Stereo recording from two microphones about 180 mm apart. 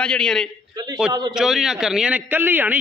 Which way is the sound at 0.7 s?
20° right (ahead or behind).